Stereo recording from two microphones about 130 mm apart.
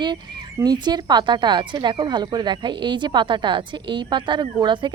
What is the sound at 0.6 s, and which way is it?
Speech, 30° right (ahead or behind).